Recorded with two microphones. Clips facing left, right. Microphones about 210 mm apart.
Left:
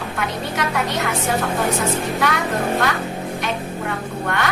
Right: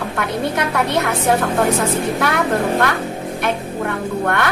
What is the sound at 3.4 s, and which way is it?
Music, 55° right (ahead or behind).